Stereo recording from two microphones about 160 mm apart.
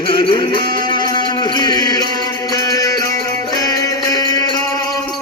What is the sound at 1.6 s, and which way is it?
Chant, 25° left (ahead or behind).